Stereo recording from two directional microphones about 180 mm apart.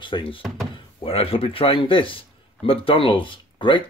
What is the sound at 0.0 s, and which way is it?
A man's voice, 30° left (ahead or behind).